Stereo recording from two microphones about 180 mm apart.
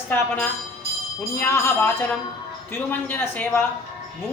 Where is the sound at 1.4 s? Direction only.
15° left (ahead or behind).